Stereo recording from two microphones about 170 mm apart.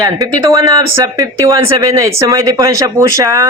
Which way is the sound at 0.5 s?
20° right (ahead or behind).